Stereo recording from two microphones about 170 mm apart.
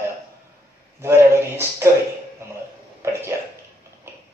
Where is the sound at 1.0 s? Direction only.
15° right (ahead or behind).